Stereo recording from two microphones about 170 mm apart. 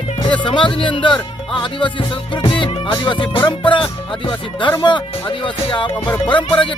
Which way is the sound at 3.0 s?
25° left (ahead or behind).